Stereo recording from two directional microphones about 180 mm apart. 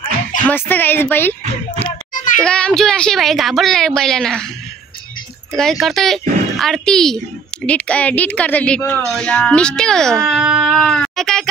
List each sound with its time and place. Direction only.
0.5 s speech: 10° left (ahead or behind)
1.8 s children playing: 45° left (ahead or behind)
2.4 s speech: 5° left (ahead or behind)
5.5 s speech: centre (ahead or behind)